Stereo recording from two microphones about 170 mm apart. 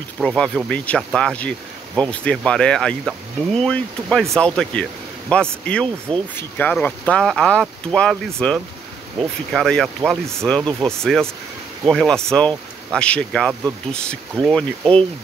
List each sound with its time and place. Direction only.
0.2 s speech: centre (ahead or behind)